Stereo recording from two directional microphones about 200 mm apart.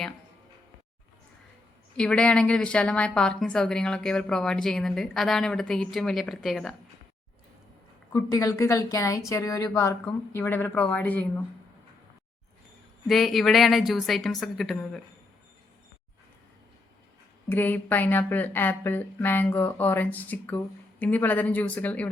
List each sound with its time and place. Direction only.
2.0 s a woman's voice: 5° left (ahead or behind)
8.1 s a woman's voice: 15° left (ahead or behind)
13.1 s a woman's voice: centre (ahead or behind)
17.5 s a woman's voice: 10° left (ahead or behind)